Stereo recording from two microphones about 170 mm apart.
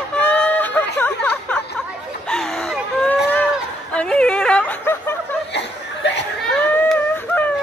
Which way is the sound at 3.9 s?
5° left (ahead or behind).